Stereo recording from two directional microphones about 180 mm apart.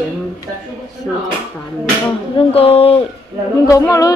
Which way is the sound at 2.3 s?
35° left (ahead or behind).